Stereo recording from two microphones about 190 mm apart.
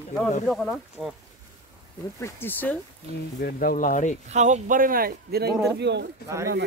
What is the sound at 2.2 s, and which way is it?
Speech, 10° left (ahead or behind).